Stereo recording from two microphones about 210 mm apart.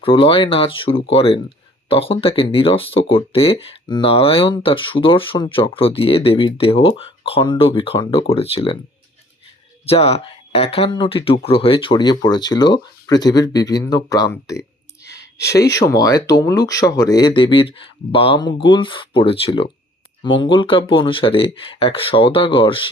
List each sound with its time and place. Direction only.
0.0 s speech: 25° left (ahead or behind)
9.8 s speech: 30° left (ahead or behind)